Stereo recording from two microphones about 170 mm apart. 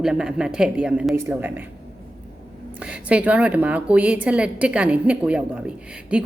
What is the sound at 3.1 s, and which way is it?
Speech, 10° right (ahead or behind).